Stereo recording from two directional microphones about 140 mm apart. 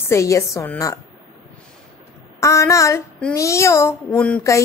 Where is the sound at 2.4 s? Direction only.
20° left (ahead or behind).